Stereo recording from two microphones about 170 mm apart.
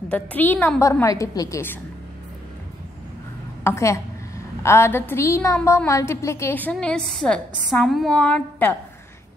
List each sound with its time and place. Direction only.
0.1 s a woman's voice: 10° left (ahead or behind)
3.6 s a woman's voice: 15° left (ahead or behind)